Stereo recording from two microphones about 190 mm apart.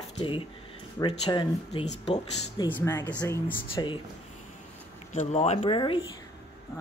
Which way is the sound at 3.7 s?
25° left (ahead or behind).